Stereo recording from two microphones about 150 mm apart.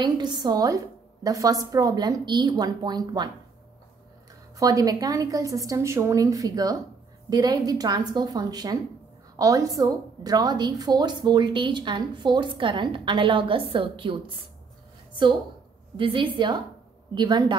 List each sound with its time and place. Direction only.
0.0 s a woman's voice: 30° right (ahead or behind)
4.6 s a woman's voice: 25° right (ahead or behind)
16.0 s a woman's voice: 35° right (ahead or behind)